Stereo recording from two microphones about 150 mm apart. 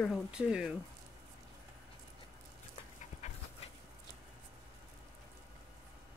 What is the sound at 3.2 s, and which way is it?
Dog, 50° left (ahead or behind).